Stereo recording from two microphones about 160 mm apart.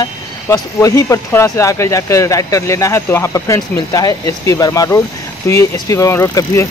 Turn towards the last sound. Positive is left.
turn(degrees=20)  # may be behind; listen again after turning